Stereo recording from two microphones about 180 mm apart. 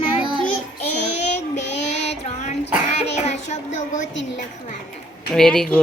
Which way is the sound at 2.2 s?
40° left (ahead or behind).